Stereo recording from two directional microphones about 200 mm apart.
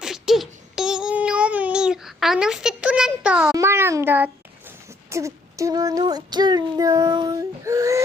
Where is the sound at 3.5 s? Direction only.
10° right (ahead or behind).